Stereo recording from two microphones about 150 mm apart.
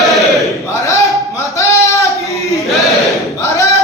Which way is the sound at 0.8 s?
20° left (ahead or behind).